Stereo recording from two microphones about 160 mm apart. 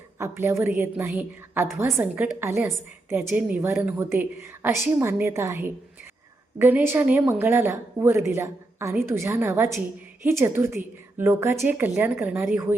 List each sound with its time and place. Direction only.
0.2 s speech: 15° right (ahead or behind)